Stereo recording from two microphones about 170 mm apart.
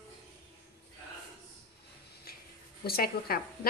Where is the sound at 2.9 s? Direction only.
60° left (ahead or behind).